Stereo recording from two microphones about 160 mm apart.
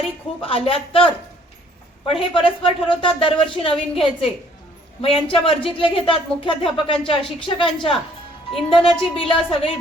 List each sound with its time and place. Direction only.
0.4 s speech: 35° left (ahead or behind)